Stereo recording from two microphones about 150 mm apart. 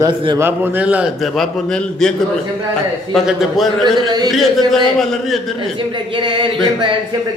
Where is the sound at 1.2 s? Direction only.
Centre (ahead or behind).